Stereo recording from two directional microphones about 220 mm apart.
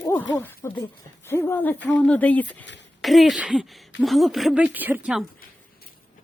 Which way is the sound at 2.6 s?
55° left (ahead or behind).